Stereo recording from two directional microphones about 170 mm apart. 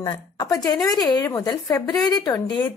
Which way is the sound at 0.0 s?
25° left (ahead or behind).